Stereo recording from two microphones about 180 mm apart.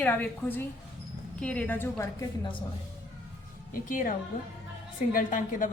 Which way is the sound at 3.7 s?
50° left (ahead or behind).